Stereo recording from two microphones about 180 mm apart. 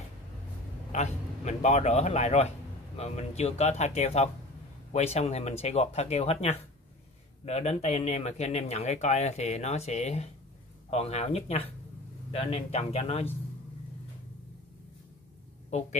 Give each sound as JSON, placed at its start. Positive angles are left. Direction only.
{"t": 0.9, "sound": "speech", "side_deg": 40}